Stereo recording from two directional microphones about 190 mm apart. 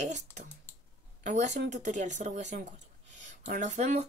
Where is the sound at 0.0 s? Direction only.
40° right (ahead or behind).